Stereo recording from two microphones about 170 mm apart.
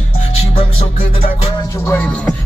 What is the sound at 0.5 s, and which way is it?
Music, 35° left (ahead or behind).